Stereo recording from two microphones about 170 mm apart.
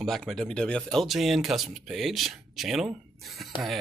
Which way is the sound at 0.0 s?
Centre (ahead or behind).